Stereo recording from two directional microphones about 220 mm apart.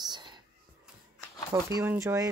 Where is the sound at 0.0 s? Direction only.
20° right (ahead or behind).